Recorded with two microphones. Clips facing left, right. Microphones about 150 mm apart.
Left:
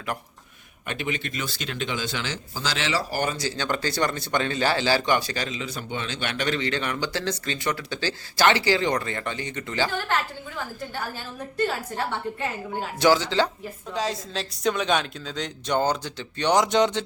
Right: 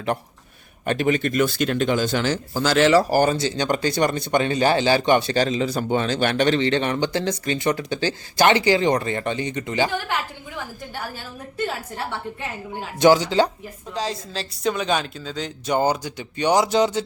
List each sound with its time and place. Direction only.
0.9 s speech: 40° right (ahead or behind); by 10.2 s 15° right (ahead or behind)
13.0 s speech: 15° right (ahead or behind)
13.9 s a woman's voice: centre (ahead or behind)